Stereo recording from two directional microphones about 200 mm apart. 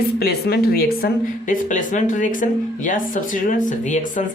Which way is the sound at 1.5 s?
40° left (ahead or behind).